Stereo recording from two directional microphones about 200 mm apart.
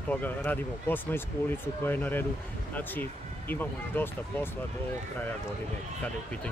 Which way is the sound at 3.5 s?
10° left (ahead or behind).